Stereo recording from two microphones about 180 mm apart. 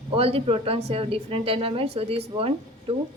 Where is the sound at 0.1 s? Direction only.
30° right (ahead or behind).